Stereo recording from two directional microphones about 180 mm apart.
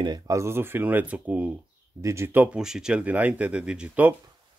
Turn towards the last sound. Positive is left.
turn(degrees=-10)  # may be behind; listen again after turning